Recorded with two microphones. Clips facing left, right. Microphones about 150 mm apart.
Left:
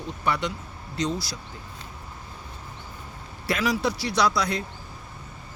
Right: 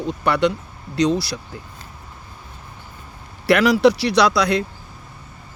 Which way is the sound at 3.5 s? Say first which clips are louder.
Right 11 dB; 70° right (ahead or behind).